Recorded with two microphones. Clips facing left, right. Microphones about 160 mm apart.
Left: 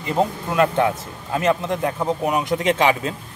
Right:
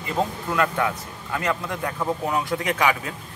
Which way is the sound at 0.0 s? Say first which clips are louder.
Left 4 dB; 20° left (ahead or behind).